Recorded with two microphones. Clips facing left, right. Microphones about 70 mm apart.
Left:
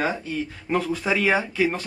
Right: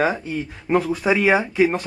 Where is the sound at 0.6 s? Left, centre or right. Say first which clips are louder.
Right 6 dB; centre.